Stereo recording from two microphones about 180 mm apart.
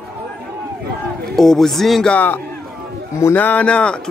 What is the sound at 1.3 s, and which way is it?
A man's voice, centre (ahead or behind).